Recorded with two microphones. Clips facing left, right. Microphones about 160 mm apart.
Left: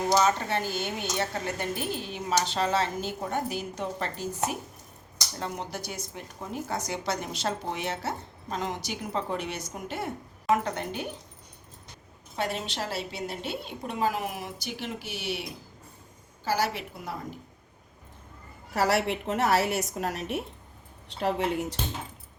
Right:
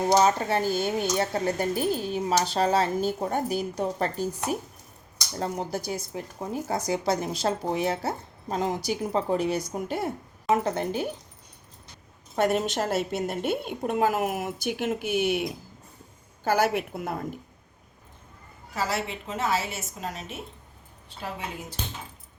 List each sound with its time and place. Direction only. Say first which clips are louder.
0.2 s a woman's voice: right 3 dB; 35° right (ahead or behind)
12.4 s a woman's voice: right 7 dB; 50° right (ahead or behind)
18.7 s a woman's voice: left 4 dB; 65° left (ahead or behind)
21.1 s a woman's voice: left 8 dB; 75° left (ahead or behind)